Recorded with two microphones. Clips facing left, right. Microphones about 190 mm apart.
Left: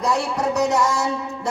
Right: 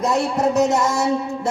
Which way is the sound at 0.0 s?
25° right (ahead or behind).